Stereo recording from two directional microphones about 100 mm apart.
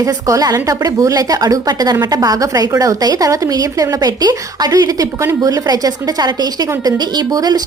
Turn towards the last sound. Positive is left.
turn(degrees=-40)  # may be behind; listen again after turning